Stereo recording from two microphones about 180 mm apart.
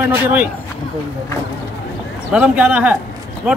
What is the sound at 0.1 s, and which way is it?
Speech, 10° right (ahead or behind).